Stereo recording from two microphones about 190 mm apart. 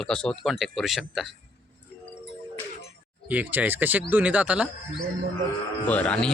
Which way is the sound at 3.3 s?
10° right (ahead or behind).